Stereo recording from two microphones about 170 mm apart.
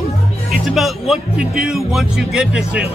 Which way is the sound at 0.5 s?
Centre (ahead or behind).